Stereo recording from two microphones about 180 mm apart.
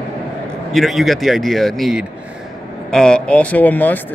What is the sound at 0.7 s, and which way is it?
Speech, centre (ahead or behind).